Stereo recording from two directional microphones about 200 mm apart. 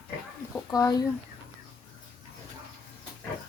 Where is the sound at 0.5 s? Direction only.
20° left (ahead or behind).